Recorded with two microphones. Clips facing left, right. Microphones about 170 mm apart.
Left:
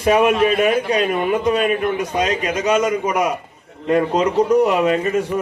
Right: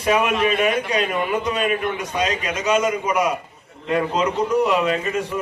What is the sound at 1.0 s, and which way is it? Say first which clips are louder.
A man's voice: left 4 dB; 40° left (ahead or behind).